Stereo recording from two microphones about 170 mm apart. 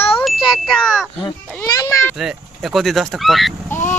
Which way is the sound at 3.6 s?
15° left (ahead or behind).